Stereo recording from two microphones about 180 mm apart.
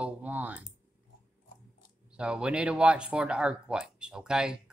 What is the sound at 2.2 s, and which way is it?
Speech, 5° right (ahead or behind).